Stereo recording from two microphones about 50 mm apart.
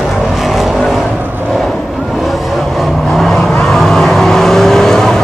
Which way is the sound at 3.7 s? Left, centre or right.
Centre.